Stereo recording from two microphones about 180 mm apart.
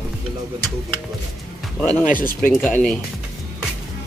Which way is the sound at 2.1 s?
50° left (ahead or behind).